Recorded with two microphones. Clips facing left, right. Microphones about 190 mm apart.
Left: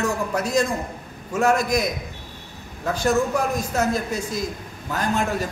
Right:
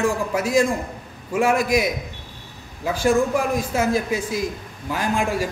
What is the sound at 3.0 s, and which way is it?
A man's voice, 10° right (ahead or behind).